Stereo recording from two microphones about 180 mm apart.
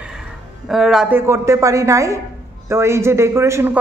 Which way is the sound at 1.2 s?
15° right (ahead or behind).